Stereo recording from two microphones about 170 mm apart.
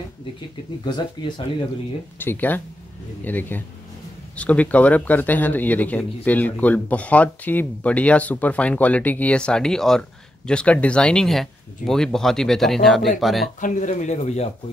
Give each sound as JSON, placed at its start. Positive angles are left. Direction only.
{"t": 0.8, "sound": "speech", "side_deg": 25}
{"t": 2.1, "sound": "speech", "side_deg": 10}
{"t": 13.6, "sound": "speech", "side_deg": 45}